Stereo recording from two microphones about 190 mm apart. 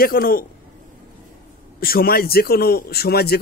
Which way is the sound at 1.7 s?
50° left (ahead or behind).